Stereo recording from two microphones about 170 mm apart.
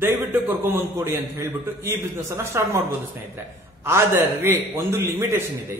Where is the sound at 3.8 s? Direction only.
15° right (ahead or behind).